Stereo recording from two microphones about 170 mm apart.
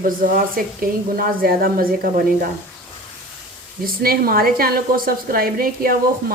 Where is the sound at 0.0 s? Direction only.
55° right (ahead or behind).